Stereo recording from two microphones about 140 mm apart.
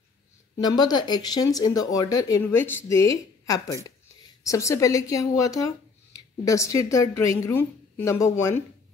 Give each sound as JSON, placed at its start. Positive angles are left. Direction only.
{"t": 0.6, "sound": "speech", "side_deg": 30}